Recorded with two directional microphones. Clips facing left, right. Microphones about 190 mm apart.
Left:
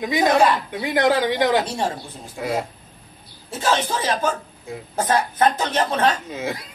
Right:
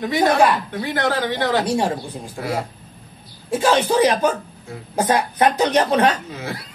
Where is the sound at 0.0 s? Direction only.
15° left (ahead or behind).